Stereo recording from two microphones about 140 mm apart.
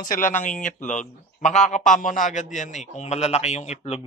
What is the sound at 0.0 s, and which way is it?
A man's voice, 75° left (ahead or behind).